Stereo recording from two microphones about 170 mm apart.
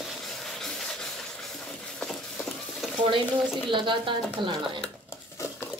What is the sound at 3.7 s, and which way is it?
Speech, 30° right (ahead or behind).